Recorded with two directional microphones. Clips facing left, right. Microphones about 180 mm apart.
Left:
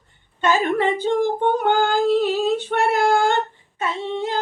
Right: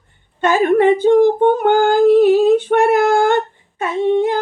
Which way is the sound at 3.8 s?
50° right (ahead or behind).